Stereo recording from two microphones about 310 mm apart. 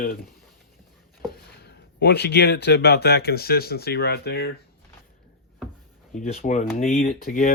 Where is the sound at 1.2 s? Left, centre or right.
Left.